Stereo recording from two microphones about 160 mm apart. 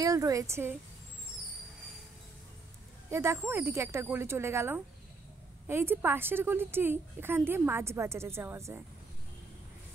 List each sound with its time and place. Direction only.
0.0 s a woman's voice: 20° right (ahead or behind)
3.1 s a woman's voice: 15° right (ahead or behind)